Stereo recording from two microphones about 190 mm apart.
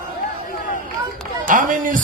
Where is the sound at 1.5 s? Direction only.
45° right (ahead or behind).